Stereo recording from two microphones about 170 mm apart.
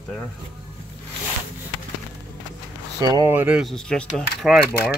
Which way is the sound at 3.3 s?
5° right (ahead or behind).